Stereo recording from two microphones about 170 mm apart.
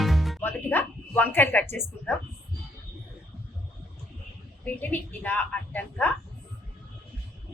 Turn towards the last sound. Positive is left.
turn(degrees=10)  # may be behind; listen again after turning